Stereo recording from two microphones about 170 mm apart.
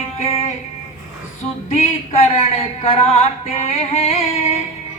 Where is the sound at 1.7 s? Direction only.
40° left (ahead or behind).